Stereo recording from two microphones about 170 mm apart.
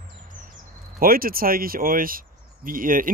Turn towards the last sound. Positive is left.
turn(degrees=-55)  # may be behind; listen again after turning